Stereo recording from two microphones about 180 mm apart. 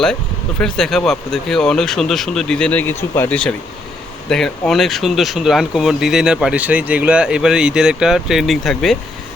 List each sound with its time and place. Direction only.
0.6 s speech: 5° left (ahead or behind)